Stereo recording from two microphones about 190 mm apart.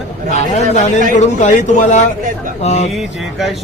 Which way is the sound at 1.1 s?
40° left (ahead or behind).